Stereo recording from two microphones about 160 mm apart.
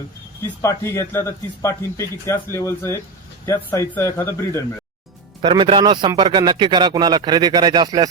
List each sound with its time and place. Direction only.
0.6 s a man's voice: 15° left (ahead or behind)
5.4 s speech: 30° right (ahead or behind)